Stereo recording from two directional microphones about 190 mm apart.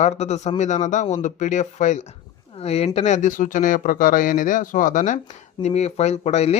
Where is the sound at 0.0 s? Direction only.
35° left (ahead or behind).